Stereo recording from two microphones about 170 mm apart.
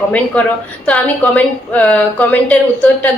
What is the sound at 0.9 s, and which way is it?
A woman's voice, 10° left (ahead or behind).